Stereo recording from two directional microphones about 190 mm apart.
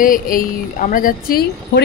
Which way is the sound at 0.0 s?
45° left (ahead or behind).